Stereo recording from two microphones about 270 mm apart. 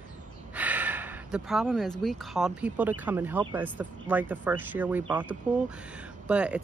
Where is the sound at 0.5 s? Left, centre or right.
Centre.